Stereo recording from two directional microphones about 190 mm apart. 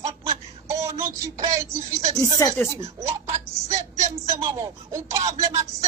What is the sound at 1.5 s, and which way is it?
Speech, 15° right (ahead or behind).